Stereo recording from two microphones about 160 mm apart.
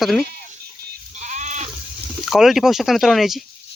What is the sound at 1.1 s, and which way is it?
Sheep, 50° right (ahead or behind).